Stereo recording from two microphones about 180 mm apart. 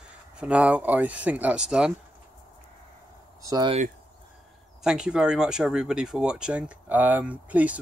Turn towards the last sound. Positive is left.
turn(degrees=-10)  # may be behind; listen again after turning